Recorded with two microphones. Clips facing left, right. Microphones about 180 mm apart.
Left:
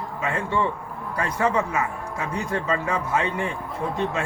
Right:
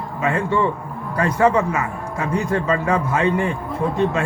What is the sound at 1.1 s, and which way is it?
Speech, 55° right (ahead or behind).